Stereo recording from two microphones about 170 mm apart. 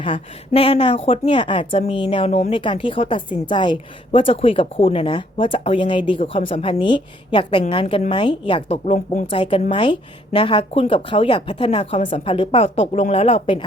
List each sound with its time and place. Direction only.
0.0 s speech: 30° left (ahead or behind)